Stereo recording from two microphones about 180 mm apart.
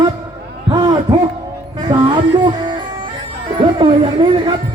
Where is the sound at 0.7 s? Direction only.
20° right (ahead or behind).